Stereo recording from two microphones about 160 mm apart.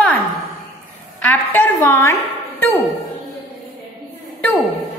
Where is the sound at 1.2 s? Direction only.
15° left (ahead or behind).